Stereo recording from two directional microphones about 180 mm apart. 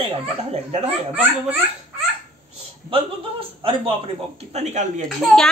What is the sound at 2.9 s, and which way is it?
A man's voice, 30° right (ahead or behind).